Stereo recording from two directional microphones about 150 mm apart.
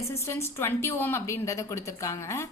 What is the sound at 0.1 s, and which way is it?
A woman's voice, 15° left (ahead or behind).